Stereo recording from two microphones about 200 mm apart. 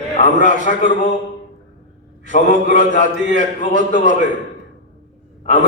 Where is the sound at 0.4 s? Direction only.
40° left (ahead or behind).